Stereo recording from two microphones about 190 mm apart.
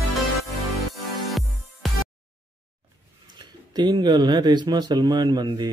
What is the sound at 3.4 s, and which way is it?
Speech, 25° right (ahead or behind).